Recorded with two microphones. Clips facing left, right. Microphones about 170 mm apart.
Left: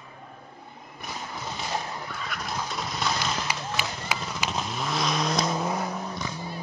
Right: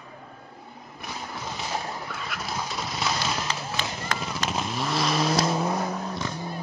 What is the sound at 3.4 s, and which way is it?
Run, 10° left (ahead or behind).